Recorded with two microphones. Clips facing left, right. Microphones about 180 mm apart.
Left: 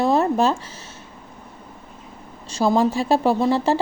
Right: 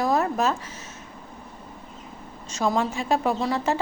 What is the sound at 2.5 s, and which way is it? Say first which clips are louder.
Speech: left 6 dB; 30° left (ahead or behind).